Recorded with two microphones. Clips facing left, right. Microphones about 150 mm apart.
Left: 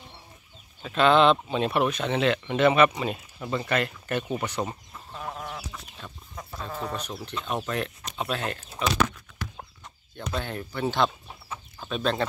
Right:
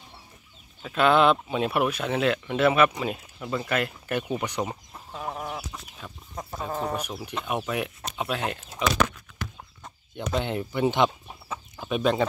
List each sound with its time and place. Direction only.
0.8 s speech: 5° right (ahead or behind)
3.3 s chicken: centre (ahead or behind)
6.9 s speech: 10° right (ahead or behind)
10.1 s speech: 20° right (ahead or behind)